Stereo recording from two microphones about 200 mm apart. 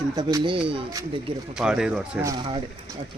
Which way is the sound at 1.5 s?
5° right (ahead or behind).